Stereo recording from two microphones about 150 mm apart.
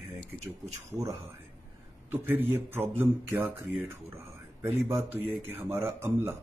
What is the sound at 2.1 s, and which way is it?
Speech, 15° right (ahead or behind).